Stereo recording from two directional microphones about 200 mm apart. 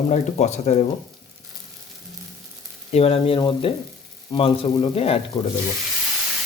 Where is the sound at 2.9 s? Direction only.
30° left (ahead or behind).